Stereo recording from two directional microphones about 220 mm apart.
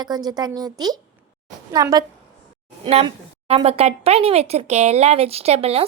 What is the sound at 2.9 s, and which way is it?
A woman's voice, 25° right (ahead or behind).